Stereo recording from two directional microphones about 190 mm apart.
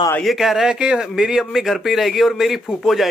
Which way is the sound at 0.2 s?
Centre (ahead or behind).